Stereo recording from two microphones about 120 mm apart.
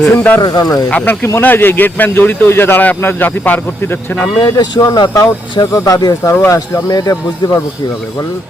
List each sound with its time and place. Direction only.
0.0 s speech: 15° left (ahead or behind)
0.4 s speech: 35° left (ahead or behind)
0.9 s speech: 15° left (ahead or behind)
4.4 s speech: 35° left (ahead or behind)
6.3 s speech: 15° left (ahead or behind)
6.8 s speech: 30° left (ahead or behind)